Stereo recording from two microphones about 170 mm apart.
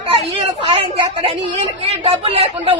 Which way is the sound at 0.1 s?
30° right (ahead or behind).